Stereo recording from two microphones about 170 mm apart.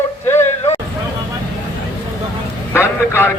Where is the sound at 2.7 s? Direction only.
15° left (ahead or behind).